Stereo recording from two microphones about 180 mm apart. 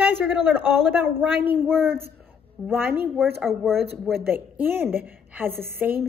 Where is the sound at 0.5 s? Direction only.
10° right (ahead or behind).